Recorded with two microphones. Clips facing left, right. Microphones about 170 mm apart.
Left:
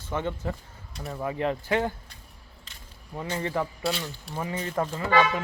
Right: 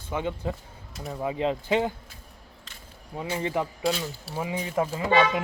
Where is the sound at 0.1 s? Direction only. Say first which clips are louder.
Right 1 dB; 10° right (ahead or behind).